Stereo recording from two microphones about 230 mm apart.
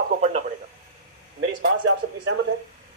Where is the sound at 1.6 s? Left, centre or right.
Right.